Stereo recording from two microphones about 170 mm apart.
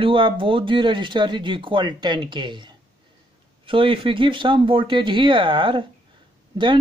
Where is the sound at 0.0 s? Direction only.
30° right (ahead or behind).